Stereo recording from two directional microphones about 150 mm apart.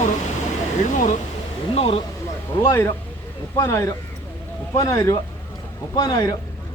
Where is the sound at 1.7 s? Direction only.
40° left (ahead or behind).